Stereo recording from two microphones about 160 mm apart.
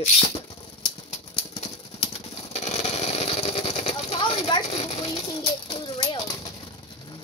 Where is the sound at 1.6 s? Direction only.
40° left (ahead or behind).